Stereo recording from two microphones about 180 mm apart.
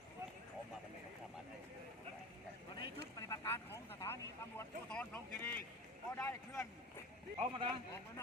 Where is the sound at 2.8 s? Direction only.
20° left (ahead or behind).